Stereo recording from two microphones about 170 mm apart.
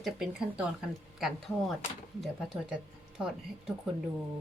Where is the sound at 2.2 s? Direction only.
Centre (ahead or behind).